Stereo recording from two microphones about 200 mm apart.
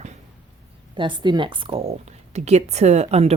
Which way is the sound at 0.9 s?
25° right (ahead or behind).